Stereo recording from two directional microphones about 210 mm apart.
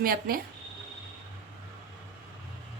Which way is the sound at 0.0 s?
45° right (ahead or behind).